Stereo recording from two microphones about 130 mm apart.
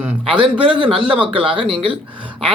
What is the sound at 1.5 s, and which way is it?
Speech, 40° right (ahead or behind).